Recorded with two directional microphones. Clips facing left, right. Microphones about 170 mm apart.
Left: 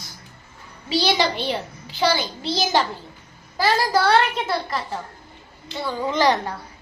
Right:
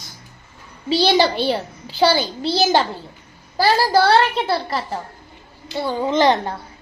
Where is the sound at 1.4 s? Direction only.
35° right (ahead or behind).